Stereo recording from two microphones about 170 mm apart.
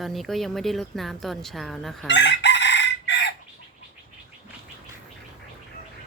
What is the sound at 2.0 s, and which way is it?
Chicken, 90° left.